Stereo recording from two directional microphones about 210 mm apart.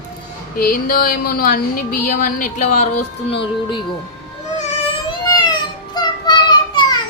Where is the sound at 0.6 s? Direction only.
45° left (ahead or behind).